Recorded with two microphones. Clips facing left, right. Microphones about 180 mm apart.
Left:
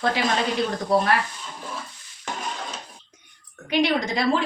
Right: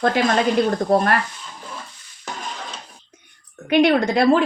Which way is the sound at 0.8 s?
50° right (ahead or behind).